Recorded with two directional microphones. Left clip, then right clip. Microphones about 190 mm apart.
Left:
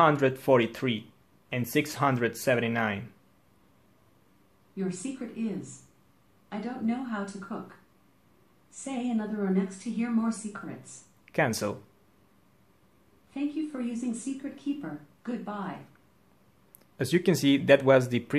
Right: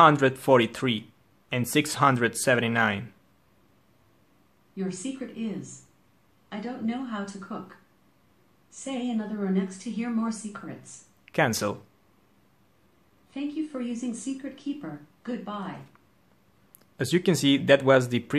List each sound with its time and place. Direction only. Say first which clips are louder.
0.0 s a woman's voice: right 4 dB; 15° right (ahead or behind)
6.5 s a woman's voice: even; 5° right (ahead or behind)
8.8 s a woman's voice: right 1 dB; 10° right (ahead or behind)
13.3 s a woman's voice: right 1 dB; 5° right (ahead or behind)
16.9 s a woman's voice: right 1 dB; 5° right (ahead or behind)